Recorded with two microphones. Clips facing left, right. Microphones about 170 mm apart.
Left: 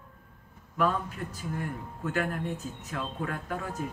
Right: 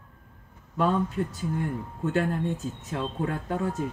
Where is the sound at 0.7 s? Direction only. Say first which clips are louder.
Right 4 dB; 30° right (ahead or behind).